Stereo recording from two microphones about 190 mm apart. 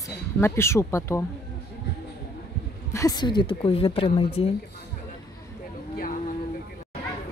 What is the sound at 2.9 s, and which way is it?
Speech, 20° left (ahead or behind).